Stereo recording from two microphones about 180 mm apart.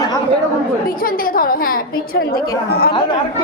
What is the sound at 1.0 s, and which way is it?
A woman's voice, 50° left (ahead or behind).